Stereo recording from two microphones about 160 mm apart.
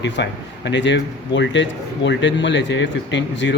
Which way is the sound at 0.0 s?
90° left.